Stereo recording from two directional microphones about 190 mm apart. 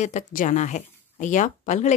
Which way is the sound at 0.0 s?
40° left (ahead or behind).